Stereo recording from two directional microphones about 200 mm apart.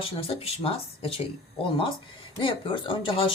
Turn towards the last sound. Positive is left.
turn(degrees=25)  # may be behind; listen again after turning